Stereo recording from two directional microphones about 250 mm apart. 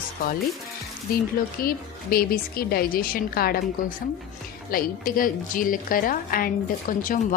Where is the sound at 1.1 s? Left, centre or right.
Left.